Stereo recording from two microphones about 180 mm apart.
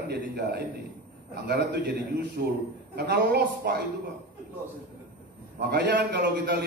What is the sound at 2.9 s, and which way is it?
Speech, 65° right (ahead or behind).